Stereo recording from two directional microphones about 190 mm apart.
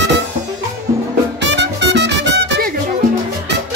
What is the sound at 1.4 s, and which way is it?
Music, 65° right (ahead or behind).